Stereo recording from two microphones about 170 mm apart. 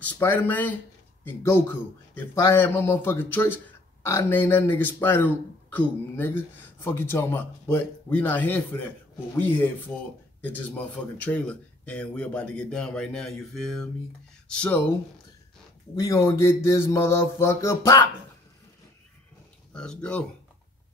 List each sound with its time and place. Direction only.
0.0 s a man's voice: 10° left (ahead or behind)
16.0 s a man's voice: 20° left (ahead or behind)
19.7 s speech: 5° left (ahead or behind)